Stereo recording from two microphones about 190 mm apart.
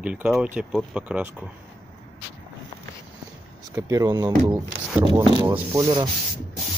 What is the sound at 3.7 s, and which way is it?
Speech, 20° right (ahead or behind).